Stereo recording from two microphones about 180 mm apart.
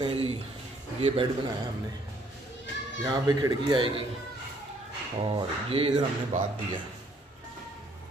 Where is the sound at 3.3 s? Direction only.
20° right (ahead or behind).